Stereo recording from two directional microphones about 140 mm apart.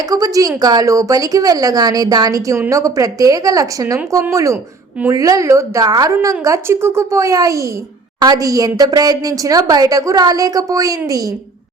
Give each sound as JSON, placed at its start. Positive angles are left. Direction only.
{"t": 0.1, "sound": "a woman's voice", "side_deg": -25}